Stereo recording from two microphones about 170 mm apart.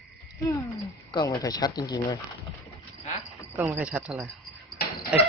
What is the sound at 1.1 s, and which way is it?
Speech, 20° left (ahead or behind).